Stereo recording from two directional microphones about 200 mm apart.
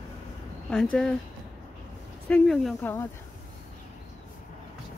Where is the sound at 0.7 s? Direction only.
5° left (ahead or behind).